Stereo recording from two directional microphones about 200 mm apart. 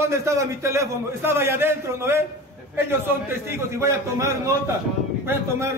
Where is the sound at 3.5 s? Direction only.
15° right (ahead or behind).